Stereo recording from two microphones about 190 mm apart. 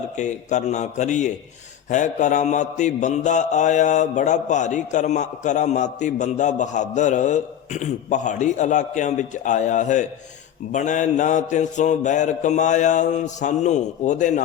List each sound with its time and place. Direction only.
0.2 s mantra: 40° left (ahead or behind)